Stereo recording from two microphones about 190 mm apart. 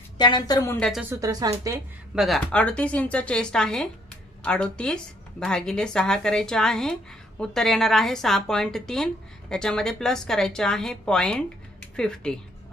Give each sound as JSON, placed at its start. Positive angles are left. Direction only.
{"t": 0.2, "sound": "a woman's voice", "side_deg": 25}
{"t": 0.8, "sound": "speech", "side_deg": 0}
{"t": 1.1, "sound": "a woman's voice", "side_deg": -20}
{"t": 2.1, "sound": "speech", "side_deg": 0}